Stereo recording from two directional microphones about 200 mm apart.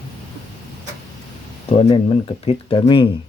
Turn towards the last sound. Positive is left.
turn(degrees=25)  # may be behind; listen again after turning